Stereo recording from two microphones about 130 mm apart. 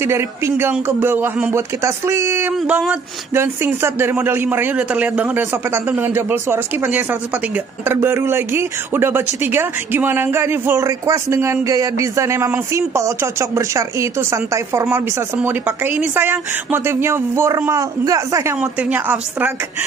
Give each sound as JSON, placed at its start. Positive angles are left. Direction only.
{"t": 0.0, "sound": "speech", "side_deg": -20}
{"t": 18.6, "sound": "speech", "side_deg": -10}